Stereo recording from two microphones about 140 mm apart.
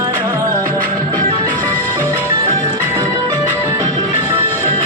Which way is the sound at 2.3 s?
30° right (ahead or behind).